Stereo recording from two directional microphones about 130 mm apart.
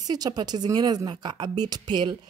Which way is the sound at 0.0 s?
30° right (ahead or behind).